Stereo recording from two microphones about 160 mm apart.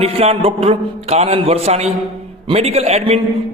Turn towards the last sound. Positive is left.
turn(degrees=-40)  # may be behind; listen again after turning